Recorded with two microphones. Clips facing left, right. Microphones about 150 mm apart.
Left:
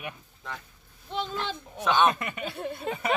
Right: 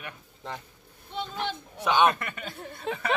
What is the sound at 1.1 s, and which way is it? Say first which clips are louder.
Speech: left 1 dB; 90° left.